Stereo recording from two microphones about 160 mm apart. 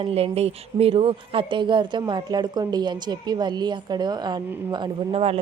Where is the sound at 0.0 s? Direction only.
40° right (ahead or behind).